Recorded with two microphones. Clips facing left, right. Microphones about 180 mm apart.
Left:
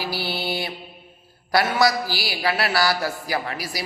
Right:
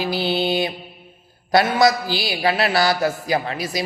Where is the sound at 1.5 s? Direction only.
20° right (ahead or behind).